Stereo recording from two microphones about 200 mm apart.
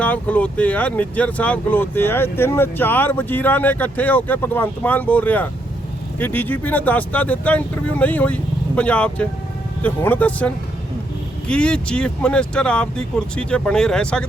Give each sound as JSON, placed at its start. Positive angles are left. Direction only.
{"t": 0.0, "sound": "speech", "side_deg": 10}